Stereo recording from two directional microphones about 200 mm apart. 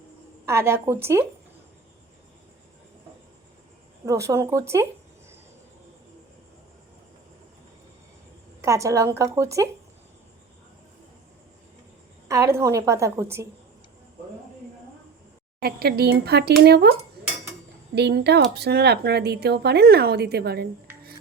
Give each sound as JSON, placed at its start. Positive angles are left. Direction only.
{"t": 0.4, "sound": "a woman's voice", "side_deg": -15}
{"t": 4.0, "sound": "a woman's voice", "side_deg": -15}
{"t": 8.6, "sound": "a woman's voice", "side_deg": -15}
{"t": 12.3, "sound": "a woman's voice", "side_deg": -15}
{"t": 15.6, "sound": "a woman's voice", "side_deg": -50}
{"t": 17.9, "sound": "a woman's voice", "side_deg": -55}